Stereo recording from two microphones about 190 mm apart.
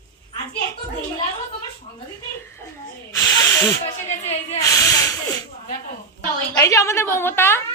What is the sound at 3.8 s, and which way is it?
Speech, 35° left (ahead or behind).